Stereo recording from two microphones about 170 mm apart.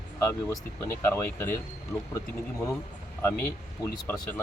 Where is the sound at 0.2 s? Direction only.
15° left (ahead or behind).